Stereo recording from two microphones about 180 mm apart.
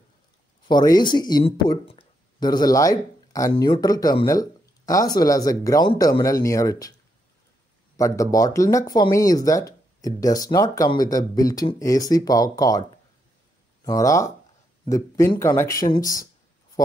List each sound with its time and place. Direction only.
0.7 s speech: 20° left (ahead or behind)
8.0 s speech: 20° left (ahead or behind)
13.8 s speech: 20° left (ahead or behind)